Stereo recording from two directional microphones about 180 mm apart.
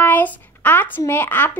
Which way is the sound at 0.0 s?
10° left (ahead or behind).